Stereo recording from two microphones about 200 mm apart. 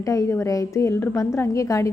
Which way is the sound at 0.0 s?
15° left (ahead or behind).